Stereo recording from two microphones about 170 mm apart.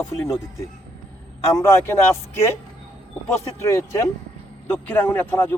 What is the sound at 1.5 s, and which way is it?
Speech, 15° left (ahead or behind).